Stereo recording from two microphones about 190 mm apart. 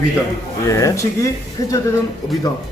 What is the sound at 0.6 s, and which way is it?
Speech, 15° left (ahead or behind).